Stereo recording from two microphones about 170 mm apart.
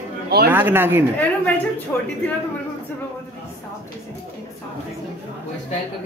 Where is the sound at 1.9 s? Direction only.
10° left (ahead or behind).